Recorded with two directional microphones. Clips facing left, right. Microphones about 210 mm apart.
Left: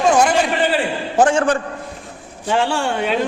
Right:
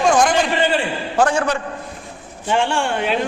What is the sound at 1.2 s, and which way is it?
Speech, 25° left (ahead or behind).